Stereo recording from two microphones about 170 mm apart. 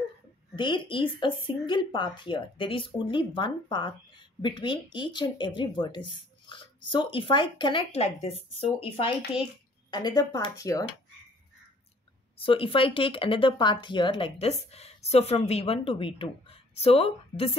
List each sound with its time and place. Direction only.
0.6 s speech: 30° left (ahead or behind)
9.9 s speech: 20° left (ahead or behind)
12.4 s speech: 30° left (ahead or behind)